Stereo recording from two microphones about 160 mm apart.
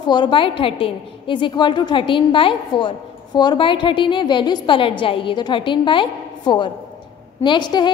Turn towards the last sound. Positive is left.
turn(degrees=25)  # may be behind; listen again after turning